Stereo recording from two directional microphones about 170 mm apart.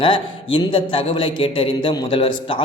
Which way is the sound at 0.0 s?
30° left (ahead or behind).